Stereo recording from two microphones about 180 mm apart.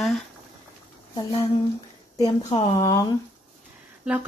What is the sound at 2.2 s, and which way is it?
Speech, 35° left (ahead or behind).